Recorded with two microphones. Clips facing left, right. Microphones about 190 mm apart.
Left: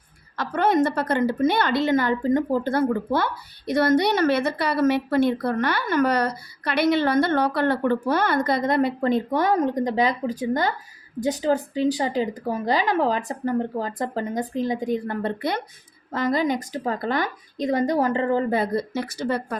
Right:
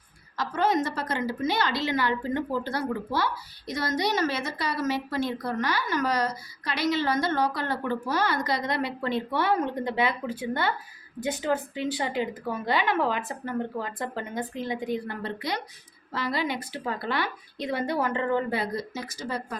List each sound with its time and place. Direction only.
0.3 s a woman's voice: 60° left (ahead or behind); by 18.6 s 35° left (ahead or behind)
18.6 s a woman's voice: 60° left (ahead or behind)